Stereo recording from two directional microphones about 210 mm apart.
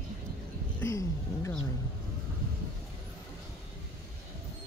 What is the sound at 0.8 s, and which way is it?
Speech, 15° left (ahead or behind).